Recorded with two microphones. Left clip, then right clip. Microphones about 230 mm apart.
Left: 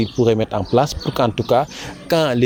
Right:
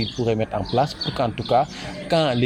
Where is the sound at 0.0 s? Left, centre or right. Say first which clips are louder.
Left 6 dB; left.